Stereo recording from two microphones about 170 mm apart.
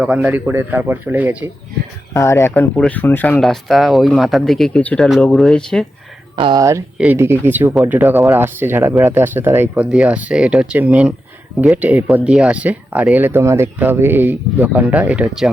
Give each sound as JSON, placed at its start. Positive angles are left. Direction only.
{"t": 0.0, "sound": "speech", "side_deg": -10}
{"t": 2.1, "sound": "speech", "side_deg": 15}
{"t": 3.4, "sound": "speech", "side_deg": 0}
{"t": 6.3, "sound": "speech", "side_deg": -25}